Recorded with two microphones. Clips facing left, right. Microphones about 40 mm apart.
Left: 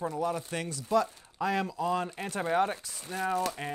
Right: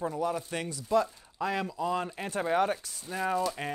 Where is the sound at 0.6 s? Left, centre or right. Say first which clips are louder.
Even; right.